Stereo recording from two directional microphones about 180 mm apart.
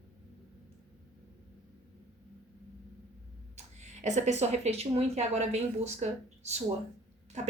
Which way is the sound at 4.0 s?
40° right (ahead or behind).